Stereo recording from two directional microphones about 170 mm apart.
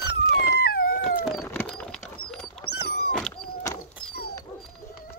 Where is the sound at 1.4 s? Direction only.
10° left (ahead or behind).